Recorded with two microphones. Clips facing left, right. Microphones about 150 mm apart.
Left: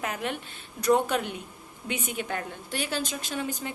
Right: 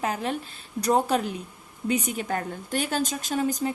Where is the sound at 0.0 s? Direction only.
35° right (ahead or behind).